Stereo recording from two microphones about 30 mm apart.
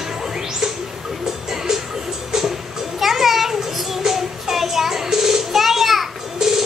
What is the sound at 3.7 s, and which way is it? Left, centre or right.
Child singing, centre.